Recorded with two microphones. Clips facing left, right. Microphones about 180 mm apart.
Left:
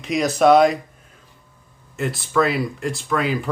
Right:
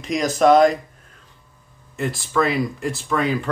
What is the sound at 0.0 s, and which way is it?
Speech, centre (ahead or behind).